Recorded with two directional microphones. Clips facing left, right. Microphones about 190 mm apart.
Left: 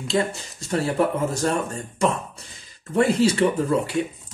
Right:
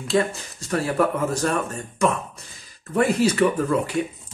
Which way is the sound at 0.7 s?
25° left (ahead or behind).